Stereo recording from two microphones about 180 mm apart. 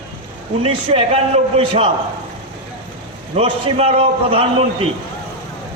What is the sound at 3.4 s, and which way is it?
A man's voice, 35° right (ahead or behind).